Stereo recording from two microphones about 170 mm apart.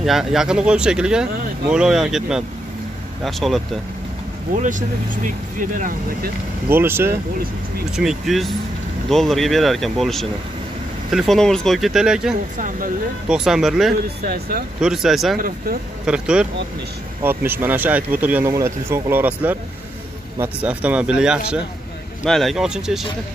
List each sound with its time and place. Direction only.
0.0 s speech: centre (ahead or behind)
4.6 s speech: 50° right (ahead or behind)
6.7 s speech: 10° right (ahead or behind)
7.9 s speech: centre (ahead or behind)
12.5 s speech: 50° right (ahead or behind)
13.3 s speech: 5° right (ahead or behind)
15.3 s speech: 55° right (ahead or behind)
16.1 s speech: 5° right (ahead or behind)